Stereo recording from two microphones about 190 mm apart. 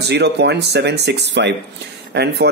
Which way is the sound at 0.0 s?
60° right (ahead or behind).